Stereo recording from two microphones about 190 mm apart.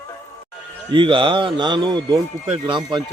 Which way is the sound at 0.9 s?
25° right (ahead or behind).